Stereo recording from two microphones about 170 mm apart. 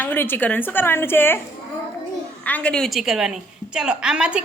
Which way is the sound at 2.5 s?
5° left (ahead or behind).